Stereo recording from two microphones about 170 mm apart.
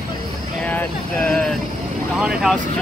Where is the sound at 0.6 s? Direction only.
10° left (ahead or behind).